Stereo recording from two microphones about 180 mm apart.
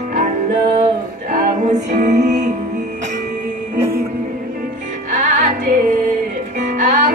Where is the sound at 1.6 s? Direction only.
40° right (ahead or behind).